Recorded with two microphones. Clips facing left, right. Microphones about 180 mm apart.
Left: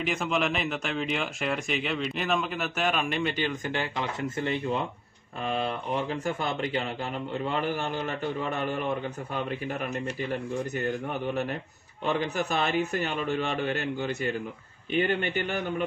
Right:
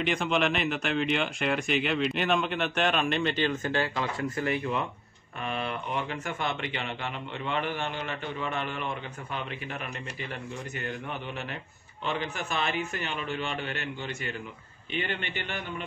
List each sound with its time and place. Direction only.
0.0 s speech: centre (ahead or behind); by 9.8 s 40° left (ahead or behind)
12.0 s a man's voice: 40° left (ahead or behind)